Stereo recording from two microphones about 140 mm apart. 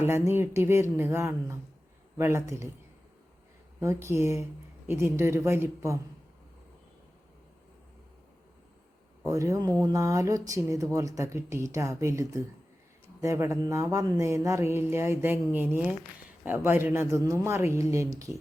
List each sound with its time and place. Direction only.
0.0 s speech: 15° right (ahead or behind)
3.8 s speech: 20° right (ahead or behind)
9.2 s speech: 20° right (ahead or behind)